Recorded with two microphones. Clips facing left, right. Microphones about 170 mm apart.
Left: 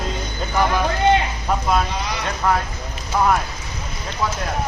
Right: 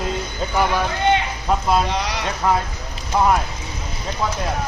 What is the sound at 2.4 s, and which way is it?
Speech, 10° right (ahead or behind).